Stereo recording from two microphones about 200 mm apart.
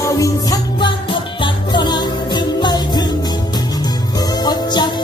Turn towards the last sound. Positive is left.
turn(degrees=20)  # may be behind; listen again after turning